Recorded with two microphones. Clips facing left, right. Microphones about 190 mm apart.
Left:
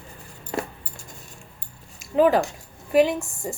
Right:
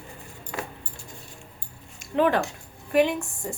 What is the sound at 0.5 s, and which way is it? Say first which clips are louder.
Keys jangling: left 6 dB; 35° left (ahead or behind).